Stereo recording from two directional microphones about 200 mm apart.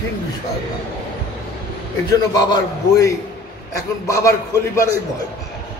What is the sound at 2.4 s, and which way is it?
Speech, 20° left (ahead or behind).